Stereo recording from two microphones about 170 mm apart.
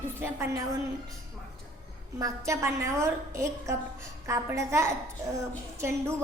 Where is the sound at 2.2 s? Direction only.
15° right (ahead or behind).